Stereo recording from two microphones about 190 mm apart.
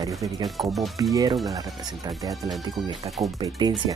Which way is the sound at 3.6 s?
25° right (ahead or behind).